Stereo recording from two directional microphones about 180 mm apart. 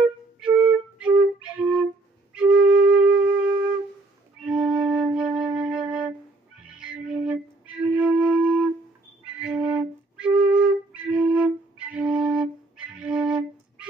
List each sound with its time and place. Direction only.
0.4 s flute: 5° right (ahead or behind)
6.8 s music: 5° right (ahead or behind)
9.4 s flute: 5° right (ahead or behind)